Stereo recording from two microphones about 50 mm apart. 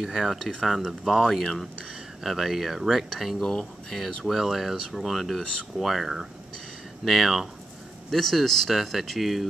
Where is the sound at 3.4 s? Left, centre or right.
Centre.